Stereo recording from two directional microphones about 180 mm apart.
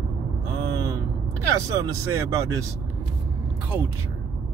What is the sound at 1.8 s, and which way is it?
Speech, 15° right (ahead or behind).